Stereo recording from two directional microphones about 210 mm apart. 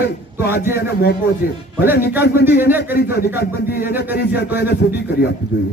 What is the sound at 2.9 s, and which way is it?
Speech, 45° left (ahead or behind).